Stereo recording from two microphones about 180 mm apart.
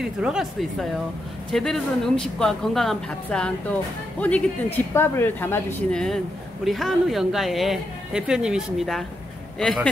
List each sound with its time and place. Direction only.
0.0 s speech: 5° right (ahead or behind)